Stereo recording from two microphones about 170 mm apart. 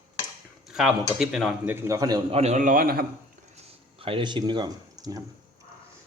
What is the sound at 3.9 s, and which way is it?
Speech, 30° right (ahead or behind).